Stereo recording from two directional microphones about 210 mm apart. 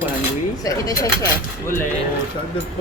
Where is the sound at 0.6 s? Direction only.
15° left (ahead or behind).